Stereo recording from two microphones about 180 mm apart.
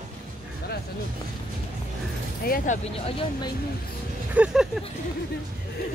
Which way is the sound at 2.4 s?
50° left (ahead or behind).